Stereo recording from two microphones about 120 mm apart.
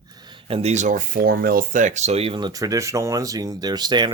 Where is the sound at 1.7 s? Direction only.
90° right; by 2.4 s 55° right (ahead or behind).